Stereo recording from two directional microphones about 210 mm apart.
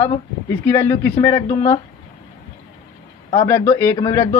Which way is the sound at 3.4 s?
10° left (ahead or behind).